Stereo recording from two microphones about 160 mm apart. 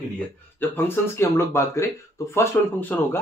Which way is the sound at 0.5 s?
15° left (ahead or behind).